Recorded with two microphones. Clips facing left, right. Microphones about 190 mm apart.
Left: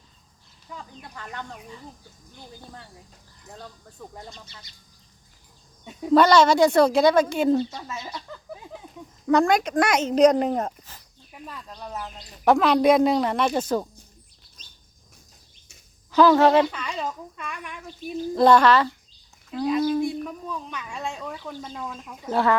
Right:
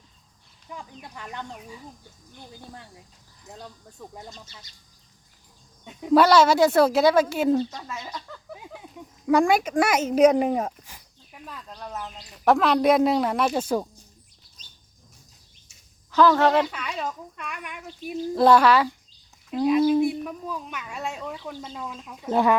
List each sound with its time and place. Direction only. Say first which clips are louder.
0.7 s speech: right 1 dB; 15° right (ahead or behind)
5.8 s a woman's voice: even; 5° right (ahead or behind)
7.7 s speech: left 1 dB; 5° left (ahead or behind)
9.2 s a woman's voice: even; 10° right (ahead or behind)
16.1 s speech: left 2 dB; 10° left (ahead or behind)
16.7 s a woman's voice: left 1 dB; 5° right (ahead or behind)
20.0 s speech: right 3 dB; 5° right (ahead or behind)